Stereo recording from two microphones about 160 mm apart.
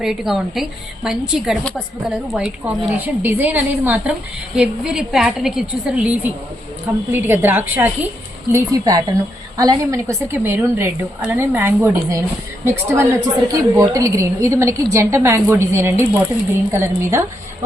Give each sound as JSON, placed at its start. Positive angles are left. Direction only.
{"t": 0.0, "sound": "a woman's voice", "side_deg": 0}
{"t": 8.5, "sound": "a woman's voice", "side_deg": -25}